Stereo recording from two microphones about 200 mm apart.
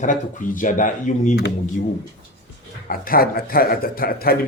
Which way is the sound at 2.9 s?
45° left (ahead or behind).